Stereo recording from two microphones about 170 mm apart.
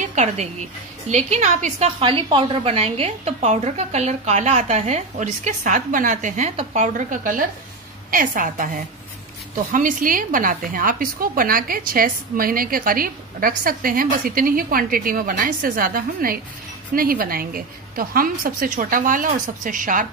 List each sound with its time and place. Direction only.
0.0 s music: 45° right (ahead or behind)
1.0 s a woman's voice: 45° right (ahead or behind)